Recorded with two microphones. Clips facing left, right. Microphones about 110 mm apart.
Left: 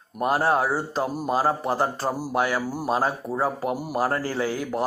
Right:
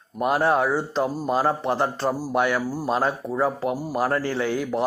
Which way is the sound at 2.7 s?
15° left (ahead or behind).